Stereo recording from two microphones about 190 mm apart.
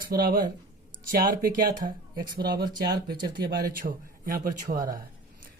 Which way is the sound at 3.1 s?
20° right (ahead or behind).